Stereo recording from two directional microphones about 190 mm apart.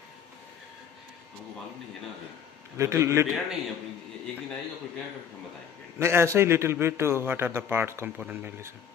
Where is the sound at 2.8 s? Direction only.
15° right (ahead or behind).